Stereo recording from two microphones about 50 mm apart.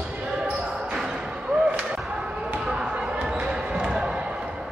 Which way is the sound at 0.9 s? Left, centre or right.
Centre.